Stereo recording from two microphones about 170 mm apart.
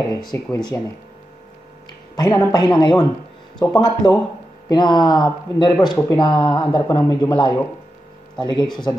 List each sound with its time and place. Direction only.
0.1 s speech: 25° left (ahead or behind)
2.1 s speech: 25° left (ahead or behind)